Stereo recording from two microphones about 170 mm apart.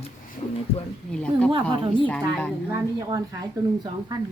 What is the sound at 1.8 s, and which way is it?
Speech, 30° right (ahead or behind).